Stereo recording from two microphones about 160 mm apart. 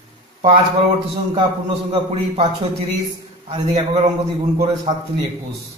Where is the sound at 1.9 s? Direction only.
45° right (ahead or behind).